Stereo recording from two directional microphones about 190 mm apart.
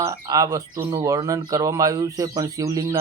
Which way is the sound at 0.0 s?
15° right (ahead or behind).